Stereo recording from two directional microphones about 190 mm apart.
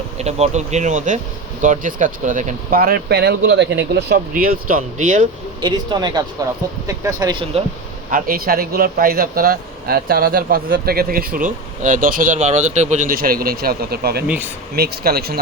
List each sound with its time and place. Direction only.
0.2 s speech: 35° right (ahead or behind); by 3.8 s 65° right (ahead or behind)
3.9 s speech: 55° right (ahead or behind)
5.6 s speech: 25° right (ahead or behind)
8.1 s speech: 50° right (ahead or behind)
14.3 s speech: 10° right (ahead or behind)
14.8 s speech: 55° right (ahead or behind)